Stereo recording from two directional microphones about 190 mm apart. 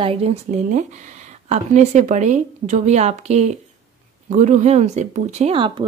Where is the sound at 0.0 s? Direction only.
30° right (ahead or behind).